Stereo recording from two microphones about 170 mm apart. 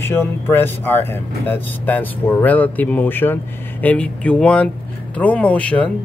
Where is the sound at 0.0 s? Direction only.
15° left (ahead or behind).